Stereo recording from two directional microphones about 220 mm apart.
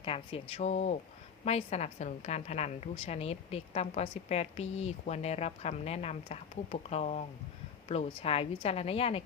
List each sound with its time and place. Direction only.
0.0 s a woman's voice: 25° left (ahead or behind)